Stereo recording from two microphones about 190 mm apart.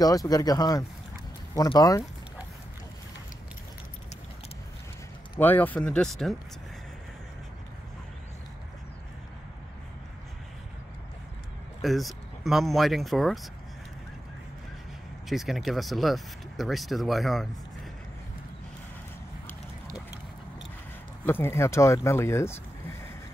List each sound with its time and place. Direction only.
0.0 s speech: 20° left (ahead or behind)
5.4 s speech: 10° left (ahead or behind)
11.8 s speech: centre (ahead or behind)
15.2 s speech: centre (ahead or behind)
21.3 s speech: 10° left (ahead or behind)